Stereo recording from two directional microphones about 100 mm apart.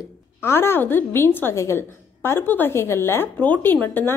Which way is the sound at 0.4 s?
25° left (ahead or behind).